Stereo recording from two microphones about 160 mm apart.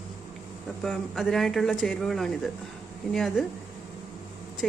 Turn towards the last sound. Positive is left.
turn(degrees=5)  # may be behind; listen again after turning